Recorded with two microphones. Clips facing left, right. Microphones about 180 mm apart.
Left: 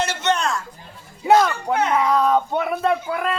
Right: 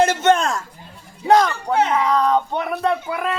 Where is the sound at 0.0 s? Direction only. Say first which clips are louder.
Right 6 dB; 50° right (ahead or behind).